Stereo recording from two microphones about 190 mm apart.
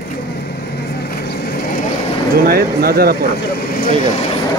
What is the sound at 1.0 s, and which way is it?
Vehicle, 55° left (ahead or behind).